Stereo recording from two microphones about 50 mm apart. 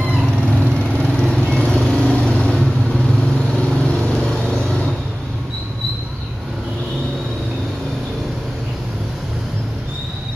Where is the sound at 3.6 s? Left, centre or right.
Centre.